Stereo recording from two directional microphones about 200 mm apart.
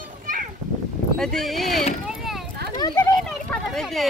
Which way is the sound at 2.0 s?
Centre (ahead or behind).